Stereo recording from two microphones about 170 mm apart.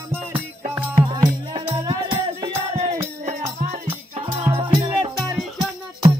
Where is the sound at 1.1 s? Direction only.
25° right (ahead or behind).